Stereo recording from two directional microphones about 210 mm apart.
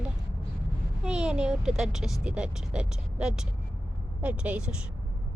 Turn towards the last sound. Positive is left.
turn(degrees=-5)  # may be behind; listen again after turning